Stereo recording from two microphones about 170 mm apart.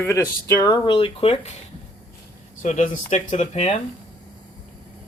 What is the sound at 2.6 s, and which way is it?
Speech, 50° left (ahead or behind).